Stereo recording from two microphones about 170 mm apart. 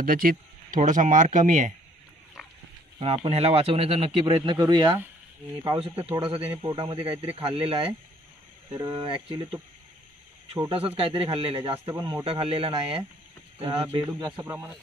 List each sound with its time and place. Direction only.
0.0 s speech: 55° right (ahead or behind)
3.0 s speech: 40° right (ahead or behind)
4.4 s speech: 20° right (ahead or behind)
6.1 s speech: 30° right (ahead or behind)
10.6 s speech: 35° right (ahead or behind)
11.9 s speech: 20° right (ahead or behind)
12.3 s speech: 35° right (ahead or behind)
14.3 s speech: 15° right (ahead or behind)